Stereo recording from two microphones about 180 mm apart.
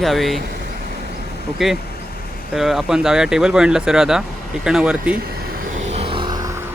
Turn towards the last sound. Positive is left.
turn(degrees=-20)  # may be behind; listen again after turning